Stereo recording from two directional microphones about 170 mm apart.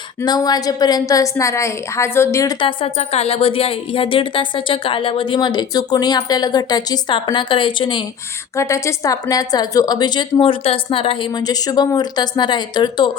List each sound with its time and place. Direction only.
0.2 s a woman's voice: 25° left (ahead or behind)
8.5 s a woman's voice: 15° left (ahead or behind)